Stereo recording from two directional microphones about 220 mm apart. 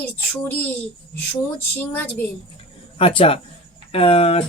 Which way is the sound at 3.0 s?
25° left (ahead or behind).